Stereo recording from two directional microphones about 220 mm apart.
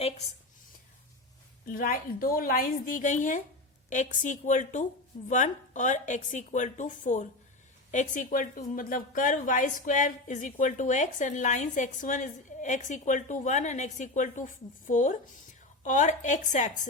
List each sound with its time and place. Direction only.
1.6 s a woman's voice: 40° left (ahead or behind)